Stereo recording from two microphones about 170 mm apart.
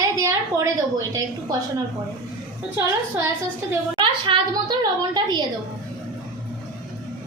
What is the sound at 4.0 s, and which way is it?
A woman's voice, 30° right (ahead or behind).